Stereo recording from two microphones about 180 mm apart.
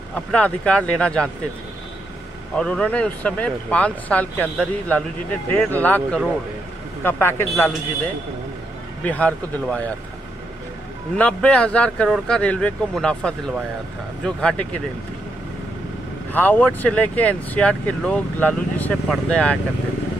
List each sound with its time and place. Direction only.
0.1 s speech: 5° left (ahead or behind)
2.5 s speech: 5° left (ahead or behind)
9.0 s speech: 5° left (ahead or behind)
11.1 s speech: 5° left (ahead or behind)
16.3 s speech: 10° left (ahead or behind)